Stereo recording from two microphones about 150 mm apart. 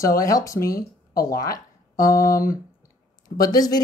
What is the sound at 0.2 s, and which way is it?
Speech, 20° left (ahead or behind).